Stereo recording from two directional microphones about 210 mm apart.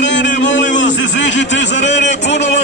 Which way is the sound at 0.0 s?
60° left (ahead or behind).